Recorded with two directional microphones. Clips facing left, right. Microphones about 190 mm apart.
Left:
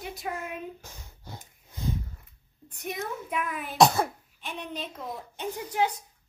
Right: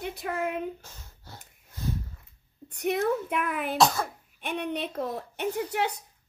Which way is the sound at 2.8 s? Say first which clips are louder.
Right 9 dB; 65° right (ahead or behind).